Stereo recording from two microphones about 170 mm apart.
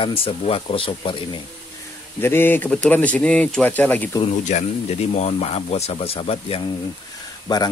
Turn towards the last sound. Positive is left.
turn(degrees=25)  # may be behind; listen again after turning